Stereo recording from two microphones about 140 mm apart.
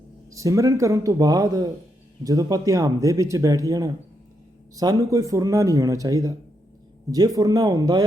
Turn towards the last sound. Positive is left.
turn(degrees=-25)  # may be behind; listen again after turning